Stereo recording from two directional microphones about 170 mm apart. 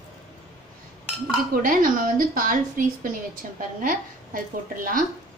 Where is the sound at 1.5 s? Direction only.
55° right (ahead or behind).